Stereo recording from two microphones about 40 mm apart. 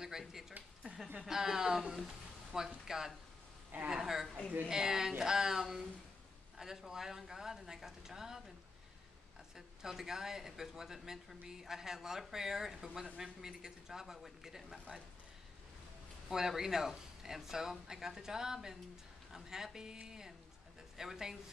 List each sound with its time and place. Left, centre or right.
0.0 s speech: centre
0.9 s a sound: right
1.2 s speech: centre
9.8 s speech: centre
16.3 s speech: centre